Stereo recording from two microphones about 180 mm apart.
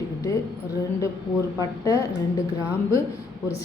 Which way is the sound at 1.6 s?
20° left (ahead or behind).